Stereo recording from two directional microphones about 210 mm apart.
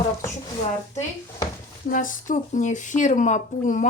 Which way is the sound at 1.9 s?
40° left (ahead or behind).